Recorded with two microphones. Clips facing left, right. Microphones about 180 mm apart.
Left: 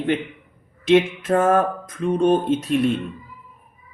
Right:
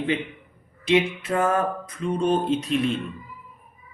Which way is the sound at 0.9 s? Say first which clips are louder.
Left 5 dB; 50° left (ahead or behind).